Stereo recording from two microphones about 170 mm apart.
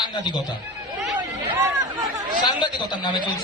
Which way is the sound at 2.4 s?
25° left (ahead or behind).